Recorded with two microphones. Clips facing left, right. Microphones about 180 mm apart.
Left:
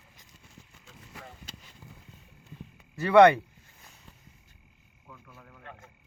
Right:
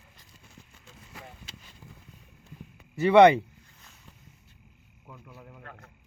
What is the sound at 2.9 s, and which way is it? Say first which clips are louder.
Speech: right 1 dB; 20° right (ahead or behind).